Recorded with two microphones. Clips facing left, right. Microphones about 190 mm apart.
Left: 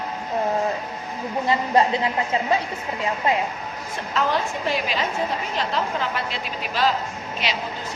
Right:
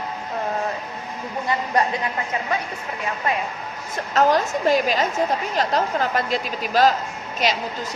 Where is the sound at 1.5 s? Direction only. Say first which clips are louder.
Left 2 dB; 25° left (ahead or behind).